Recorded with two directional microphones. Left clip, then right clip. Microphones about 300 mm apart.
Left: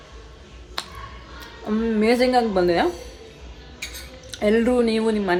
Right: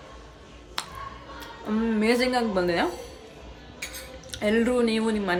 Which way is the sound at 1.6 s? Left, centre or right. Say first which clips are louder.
Left 4 dB; centre.